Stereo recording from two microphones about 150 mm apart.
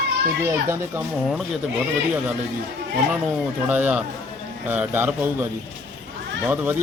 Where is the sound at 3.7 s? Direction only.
10° right (ahead or behind).